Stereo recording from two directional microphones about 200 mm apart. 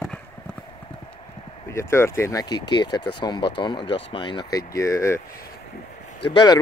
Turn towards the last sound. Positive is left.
turn(degrees=20)  # may be behind; listen again after turning